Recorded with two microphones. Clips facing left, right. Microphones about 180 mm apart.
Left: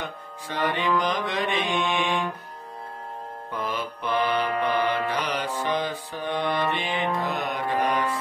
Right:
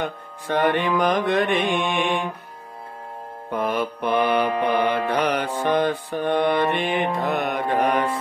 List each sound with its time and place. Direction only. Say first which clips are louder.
0.0 s mantra: right 6 dB; 60° right (ahead or behind)
3.5 s mantra: right 7 dB; 55° right (ahead or behind)